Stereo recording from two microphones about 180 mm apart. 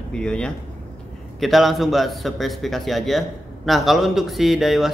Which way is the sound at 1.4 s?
Centre (ahead or behind).